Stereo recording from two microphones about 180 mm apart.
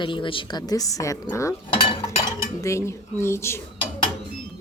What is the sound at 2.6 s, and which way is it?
Speech, 15° left (ahead or behind).